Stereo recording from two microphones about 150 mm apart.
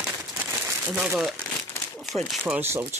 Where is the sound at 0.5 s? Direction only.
15° right (ahead or behind); by 1.3 s centre (ahead or behind).